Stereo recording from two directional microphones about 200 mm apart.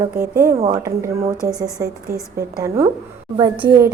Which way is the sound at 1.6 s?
15° right (ahead or behind).